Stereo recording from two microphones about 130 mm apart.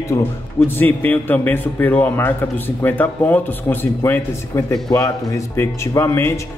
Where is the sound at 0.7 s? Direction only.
15° left (ahead or behind).